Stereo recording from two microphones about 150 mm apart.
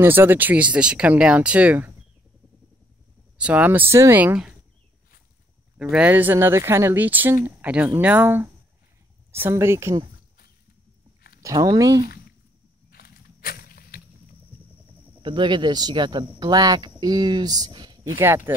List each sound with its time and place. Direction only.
0.0 s speech: 15° right (ahead or behind)
3.3 s speech: 10° right (ahead or behind)
5.8 s speech: 5° right (ahead or behind)
11.6 s speech: 20° right (ahead or behind)
12.9 s a sound: 85° left
15.2 s speech: 30° right (ahead or behind)
18.2 s speech: 15° right (ahead or behind)